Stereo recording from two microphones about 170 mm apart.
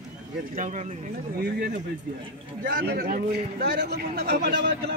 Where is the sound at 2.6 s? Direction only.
65° right (ahead or behind).